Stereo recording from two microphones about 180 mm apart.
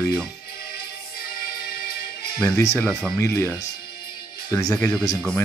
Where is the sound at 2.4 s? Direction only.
15° left (ahead or behind).